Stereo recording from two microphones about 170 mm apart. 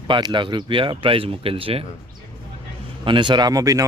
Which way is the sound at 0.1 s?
30° right (ahead or behind).